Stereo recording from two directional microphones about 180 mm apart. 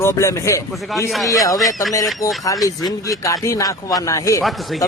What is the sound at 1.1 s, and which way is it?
Speech, centre (ahead or behind).